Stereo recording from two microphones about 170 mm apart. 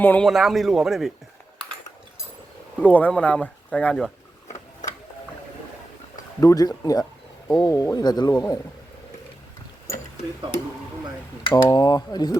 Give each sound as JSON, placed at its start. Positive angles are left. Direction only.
{"t": 0.0, "sound": "speech", "side_deg": 10}
{"t": 0.3, "sound": "speech", "side_deg": 0}
{"t": 2.8, "sound": "speech", "side_deg": 10}
{"t": 4.4, "sound": "a sound", "side_deg": 45}
{"t": 6.4, "sound": "speech", "side_deg": 20}
{"t": 11.4, "sound": "speech", "side_deg": 25}